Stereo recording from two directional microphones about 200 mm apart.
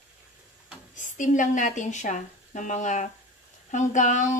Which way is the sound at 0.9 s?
40° left (ahead or behind).